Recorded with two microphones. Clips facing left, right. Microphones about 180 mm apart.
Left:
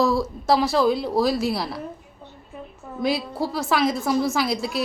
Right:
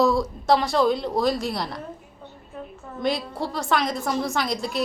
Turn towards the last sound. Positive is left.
turn(degrees=5)  # may be behind; listen again after turning